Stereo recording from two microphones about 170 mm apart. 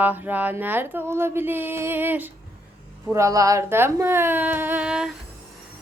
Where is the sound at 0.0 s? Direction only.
10° right (ahead or behind).